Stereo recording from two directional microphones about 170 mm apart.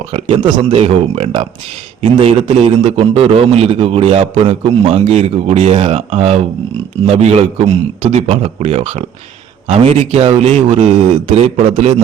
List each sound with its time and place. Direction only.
0.1 s a man's voice: 30° right (ahead or behind); by 12.0 s 45° right (ahead or behind)